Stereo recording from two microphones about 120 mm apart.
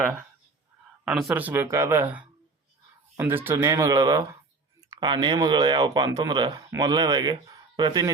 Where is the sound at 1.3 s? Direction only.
15° right (ahead or behind).